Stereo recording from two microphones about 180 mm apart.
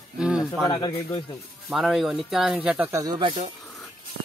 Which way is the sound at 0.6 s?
25° left (ahead or behind).